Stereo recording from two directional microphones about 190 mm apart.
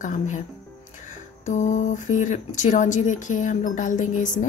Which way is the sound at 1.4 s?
40° left (ahead or behind).